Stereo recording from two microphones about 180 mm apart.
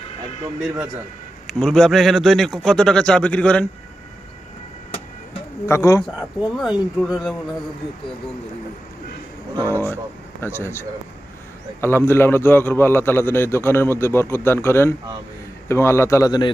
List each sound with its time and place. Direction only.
1.5 s a man's voice: 5° left (ahead or behind)
5.6 s a man's voice: 15° left (ahead or behind)
6.1 s a man's voice: 5° right (ahead or behind)
10.4 s a man's voice: 15° left (ahead or behind)